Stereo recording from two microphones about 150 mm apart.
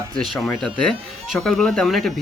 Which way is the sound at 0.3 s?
Centre (ahead or behind).